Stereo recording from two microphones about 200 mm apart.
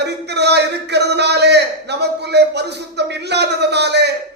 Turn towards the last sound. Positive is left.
turn(degrees=-55)  # may be behind; listen again after turning